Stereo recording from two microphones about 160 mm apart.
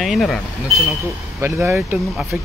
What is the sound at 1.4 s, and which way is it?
Speech, 15° right (ahead or behind).